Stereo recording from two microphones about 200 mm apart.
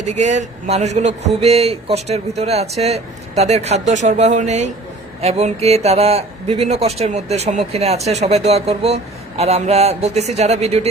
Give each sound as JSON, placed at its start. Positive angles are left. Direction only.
{"t": 0.0, "sound": "speech", "side_deg": -35}